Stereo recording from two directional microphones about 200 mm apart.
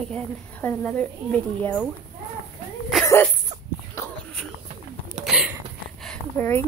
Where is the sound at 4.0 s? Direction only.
15° left (ahead or behind).